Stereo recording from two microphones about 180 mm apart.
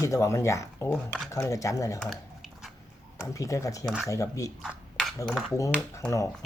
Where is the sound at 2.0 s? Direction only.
Centre (ahead or behind).